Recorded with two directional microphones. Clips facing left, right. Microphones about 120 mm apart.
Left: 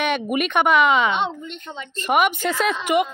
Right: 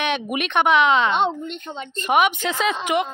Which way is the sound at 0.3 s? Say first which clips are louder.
Even; 5° left (ahead or behind).